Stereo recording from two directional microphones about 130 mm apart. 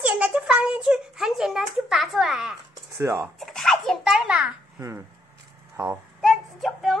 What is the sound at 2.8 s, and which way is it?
Speech, 25° right (ahead or behind).